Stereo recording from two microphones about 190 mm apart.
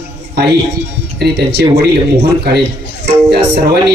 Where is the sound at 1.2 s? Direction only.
60° right (ahead or behind).